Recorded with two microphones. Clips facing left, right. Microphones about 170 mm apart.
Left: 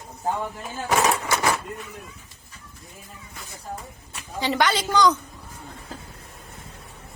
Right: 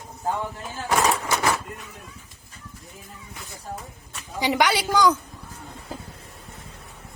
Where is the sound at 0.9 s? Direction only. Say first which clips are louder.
Even; 15° left (ahead or behind).